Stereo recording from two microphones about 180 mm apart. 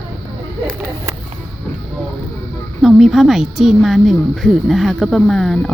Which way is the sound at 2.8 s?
Centre (ahead or behind).